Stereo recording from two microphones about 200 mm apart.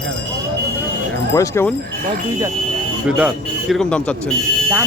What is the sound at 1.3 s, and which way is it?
Speech, 15° left (ahead or behind).